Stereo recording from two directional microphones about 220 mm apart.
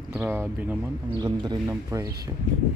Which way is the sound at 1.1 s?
20° right (ahead or behind).